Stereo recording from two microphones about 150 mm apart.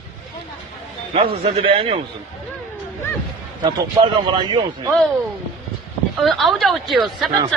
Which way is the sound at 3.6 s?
30° right (ahead or behind).